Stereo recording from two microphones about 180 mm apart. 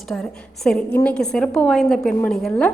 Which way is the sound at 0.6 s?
5° left (ahead or behind).